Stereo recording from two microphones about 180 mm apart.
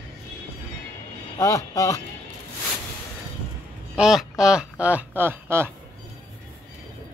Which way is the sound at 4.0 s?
Centre (ahead or behind).